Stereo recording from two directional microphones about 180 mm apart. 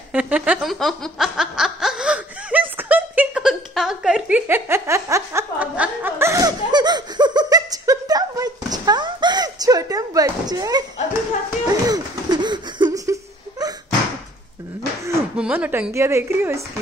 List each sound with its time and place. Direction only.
0.1 s snicker: 5° right (ahead or behind)
11.6 s a sound: 20° right (ahead or behind)
15.3 s speech: 5° right (ahead or behind)